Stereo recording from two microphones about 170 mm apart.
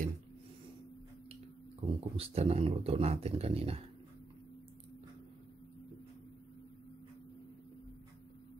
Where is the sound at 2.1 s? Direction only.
35° right (ahead or behind).